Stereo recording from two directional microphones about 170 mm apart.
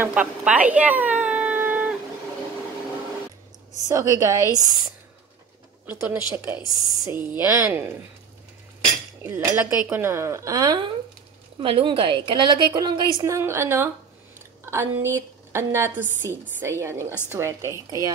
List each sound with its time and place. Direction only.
0.0 s speech: 10° right (ahead or behind)
3.9 s speech: 20° right (ahead or behind)
5.9 s speech: 10° right (ahead or behind)
9.2 s a woman's voice: 15° right (ahead or behind)